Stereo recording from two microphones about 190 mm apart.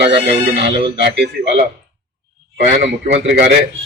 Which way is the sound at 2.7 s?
65° right (ahead or behind).